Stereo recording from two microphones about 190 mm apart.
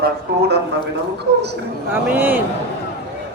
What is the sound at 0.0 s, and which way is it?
Speech, 60° right (ahead or behind).